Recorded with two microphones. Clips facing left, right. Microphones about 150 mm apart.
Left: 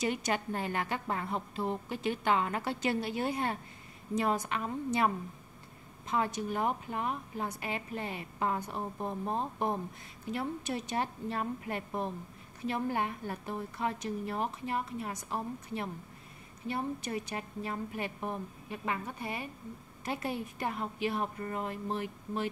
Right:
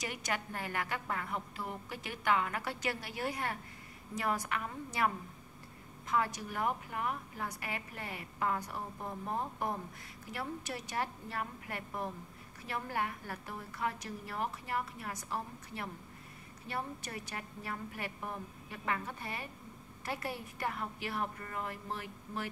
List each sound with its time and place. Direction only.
0.0 s a woman's voice: 25° left (ahead or behind)